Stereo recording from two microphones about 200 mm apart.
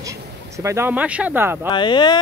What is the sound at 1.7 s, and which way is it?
Speech, 25° left (ahead or behind).